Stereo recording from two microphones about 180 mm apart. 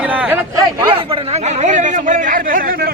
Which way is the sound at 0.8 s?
30° right (ahead or behind).